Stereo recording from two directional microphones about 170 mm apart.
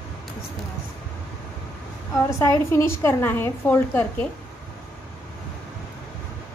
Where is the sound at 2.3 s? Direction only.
15° left (ahead or behind).